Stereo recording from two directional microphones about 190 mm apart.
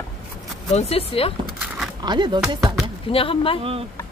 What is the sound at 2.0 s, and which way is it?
Speech, 25° right (ahead or behind).